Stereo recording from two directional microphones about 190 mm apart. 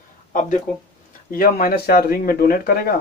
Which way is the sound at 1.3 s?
50° left (ahead or behind).